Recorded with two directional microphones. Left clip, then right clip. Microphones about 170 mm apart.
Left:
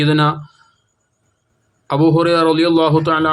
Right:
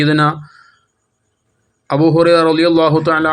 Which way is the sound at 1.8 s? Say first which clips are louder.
Right 3 dB; 15° right (ahead or behind).